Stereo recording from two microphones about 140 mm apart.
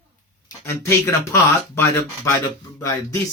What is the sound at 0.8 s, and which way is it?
Speech, 20° left (ahead or behind).